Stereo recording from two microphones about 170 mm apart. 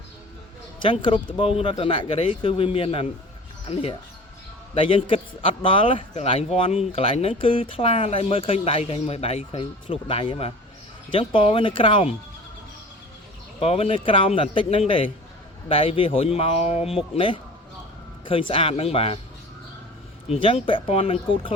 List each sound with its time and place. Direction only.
0.8 s a man's voice: 30° left (ahead or behind)
13.6 s a man's voice: 35° left (ahead or behind)
20.3 s a man's voice: 30° left (ahead or behind)